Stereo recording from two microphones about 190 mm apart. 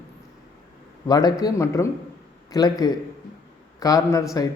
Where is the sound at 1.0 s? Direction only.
20° left (ahead or behind).